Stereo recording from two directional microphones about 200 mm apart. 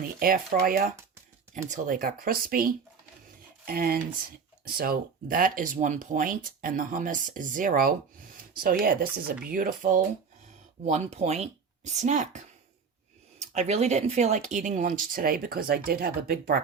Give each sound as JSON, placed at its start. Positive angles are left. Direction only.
{"t": 0.2, "sound": "speech", "side_deg": -45}
{"t": 13.5, "sound": "speech", "side_deg": -35}